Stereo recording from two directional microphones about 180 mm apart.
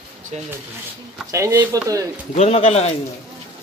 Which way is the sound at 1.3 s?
15° right (ahead or behind).